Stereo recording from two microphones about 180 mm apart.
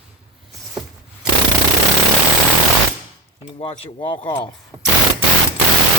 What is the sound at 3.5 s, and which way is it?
Speech, 30° left (ahead or behind).